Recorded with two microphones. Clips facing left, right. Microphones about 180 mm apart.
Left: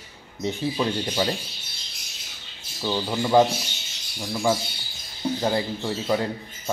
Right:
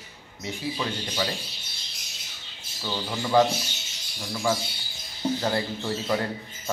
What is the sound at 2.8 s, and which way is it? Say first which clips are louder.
Speech: left 5 dB; 20° left (ahead or behind).